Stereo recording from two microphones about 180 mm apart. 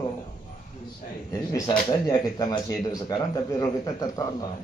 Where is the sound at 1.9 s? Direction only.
20° left (ahead or behind).